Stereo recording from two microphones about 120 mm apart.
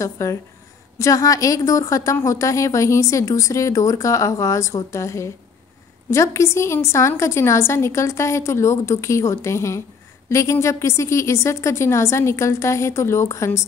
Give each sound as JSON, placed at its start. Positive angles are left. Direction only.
{"t": 0.0, "sound": "a woman's voice", "side_deg": 25}